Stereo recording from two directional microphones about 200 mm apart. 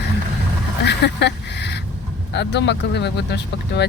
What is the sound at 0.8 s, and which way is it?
Speech, 60° left (ahead or behind).